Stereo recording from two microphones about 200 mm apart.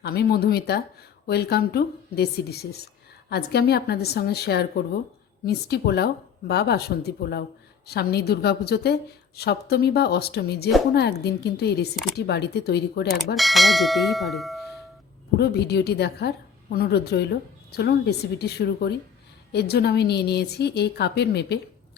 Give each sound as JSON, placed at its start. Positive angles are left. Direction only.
{"t": 0.0, "sound": "a woman's voice", "side_deg": 55}
{"t": 13.3, "sound": "a sound", "side_deg": 0}
{"t": 15.4, "sound": "a woman's voice", "side_deg": 55}